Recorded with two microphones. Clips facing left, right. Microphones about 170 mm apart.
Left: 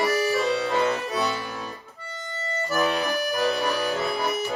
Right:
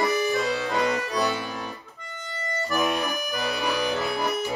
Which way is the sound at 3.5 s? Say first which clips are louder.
Left 1 dB; 35° left (ahead or behind).